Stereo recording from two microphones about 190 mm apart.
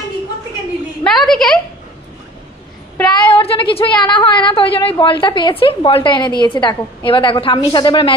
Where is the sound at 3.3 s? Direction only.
30° left (ahead or behind).